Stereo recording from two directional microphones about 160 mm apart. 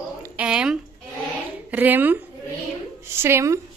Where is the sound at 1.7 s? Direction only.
10° right (ahead or behind).